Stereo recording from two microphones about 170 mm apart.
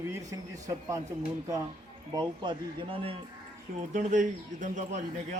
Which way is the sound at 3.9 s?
45° right (ahead or behind).